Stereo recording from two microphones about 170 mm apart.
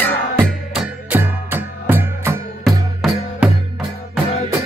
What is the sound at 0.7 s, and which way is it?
Music, 10° right (ahead or behind).